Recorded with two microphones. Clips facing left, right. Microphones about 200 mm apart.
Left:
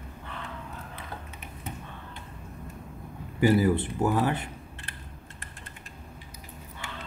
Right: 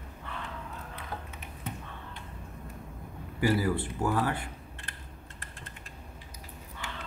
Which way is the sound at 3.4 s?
20° left (ahead or behind).